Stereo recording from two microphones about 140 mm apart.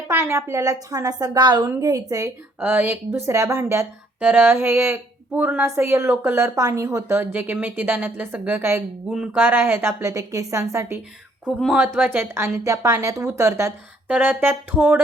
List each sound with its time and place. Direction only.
0.1 s a woman's voice: 20° right (ahead or behind)
2.6 s speech: 15° right (ahead or behind)
9.0 s speech: 5° right (ahead or behind)
11.4 s speech: 5° right (ahead or behind)